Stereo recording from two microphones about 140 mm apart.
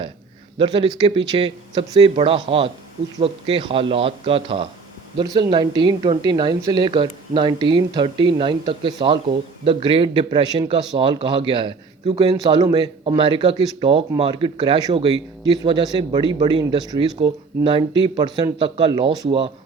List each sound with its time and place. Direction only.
0.6 s a woman's voice: 35° right (ahead or behind)
5.1 s a woman's voice: 30° right (ahead or behind)